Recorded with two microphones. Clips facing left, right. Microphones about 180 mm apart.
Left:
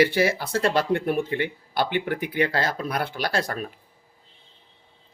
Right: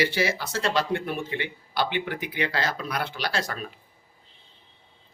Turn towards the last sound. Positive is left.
turn(degrees=50)  # may be behind; listen again after turning